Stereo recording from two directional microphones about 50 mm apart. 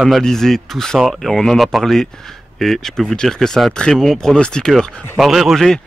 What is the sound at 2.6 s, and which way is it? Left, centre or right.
Speech, centre.